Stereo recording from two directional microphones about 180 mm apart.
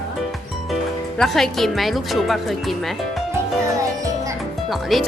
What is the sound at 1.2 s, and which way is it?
A woman's voice, centre (ahead or behind).